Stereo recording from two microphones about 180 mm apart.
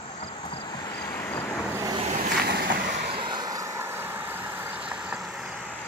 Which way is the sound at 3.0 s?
25° right (ahead or behind).